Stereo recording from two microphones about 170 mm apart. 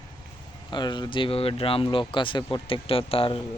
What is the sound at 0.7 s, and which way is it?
A man's voice, 25° left (ahead or behind).